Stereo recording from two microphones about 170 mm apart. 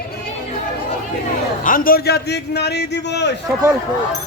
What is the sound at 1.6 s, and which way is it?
A man's voice, 55° left (ahead or behind).